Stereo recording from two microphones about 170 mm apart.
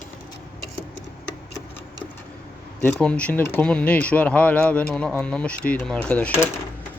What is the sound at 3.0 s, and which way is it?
Speech, 5° left (ahead or behind).